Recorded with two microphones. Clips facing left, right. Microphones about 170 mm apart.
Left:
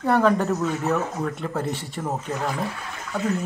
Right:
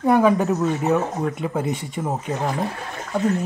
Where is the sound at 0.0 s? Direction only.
10° right (ahead or behind).